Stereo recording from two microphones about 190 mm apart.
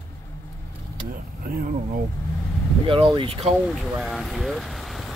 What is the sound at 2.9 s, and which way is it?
Speech, 25° right (ahead or behind).